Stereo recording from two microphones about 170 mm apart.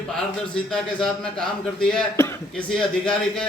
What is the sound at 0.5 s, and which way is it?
Speech, 5° left (ahead or behind).